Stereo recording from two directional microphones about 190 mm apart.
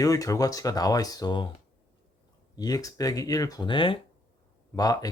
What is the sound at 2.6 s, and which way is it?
Speech, 20° left (ahead or behind).